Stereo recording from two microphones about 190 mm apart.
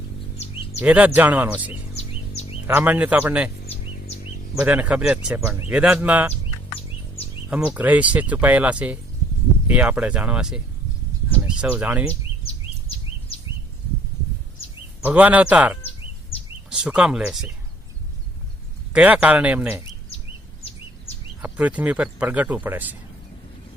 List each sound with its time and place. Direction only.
0.8 s speech: 10° right (ahead or behind)
2.0 s bird vocalization: 35° left (ahead or behind)
2.6 s speech: 10° right (ahead or behind)
4.6 s speech: 10° right (ahead or behind)
7.5 s speech: 10° right (ahead or behind)
15.0 s speech: 10° right (ahead or behind)
18.9 s speech: 5° right (ahead or behind)
21.4 s speech: 5° right (ahead or behind)